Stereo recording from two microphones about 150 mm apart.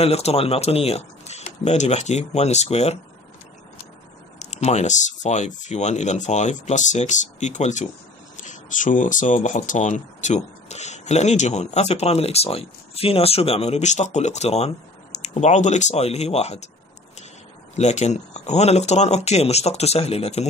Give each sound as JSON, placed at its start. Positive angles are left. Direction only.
{"t": 0.0, "sound": "speech", "side_deg": 45}
{"t": 4.4, "sound": "speech", "side_deg": 50}
{"t": 17.7, "sound": "speech", "side_deg": 50}